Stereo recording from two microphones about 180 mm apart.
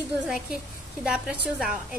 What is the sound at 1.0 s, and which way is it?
Speech, 5° right (ahead or behind).